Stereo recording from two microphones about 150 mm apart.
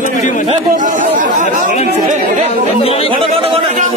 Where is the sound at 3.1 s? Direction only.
35° right (ahead or behind).